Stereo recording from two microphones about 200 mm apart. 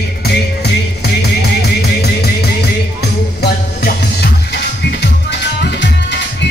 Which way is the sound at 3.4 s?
55° left (ahead or behind).